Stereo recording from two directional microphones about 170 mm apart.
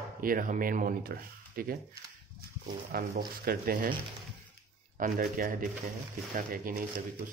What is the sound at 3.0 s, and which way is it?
Speech, 65° right (ahead or behind).